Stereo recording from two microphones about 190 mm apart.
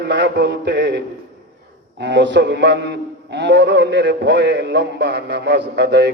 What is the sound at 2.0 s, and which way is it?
A man's voice, 70° right (ahead or behind).